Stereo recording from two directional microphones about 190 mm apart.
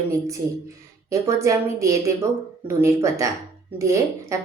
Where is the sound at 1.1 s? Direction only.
15° right (ahead or behind).